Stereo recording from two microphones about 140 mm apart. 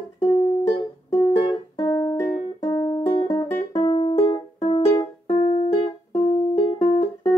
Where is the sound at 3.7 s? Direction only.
40° left (ahead or behind).